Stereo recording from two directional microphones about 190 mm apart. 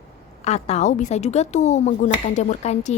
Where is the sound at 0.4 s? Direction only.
35° left (ahead or behind).